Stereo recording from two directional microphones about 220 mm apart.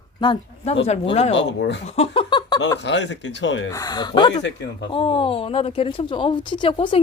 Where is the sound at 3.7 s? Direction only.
15° left (ahead or behind).